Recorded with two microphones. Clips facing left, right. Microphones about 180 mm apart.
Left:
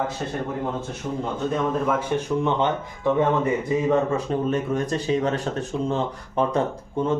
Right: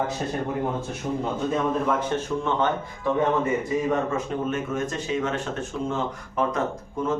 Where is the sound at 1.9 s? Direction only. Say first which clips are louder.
Left 2 dB; 10° left (ahead or behind).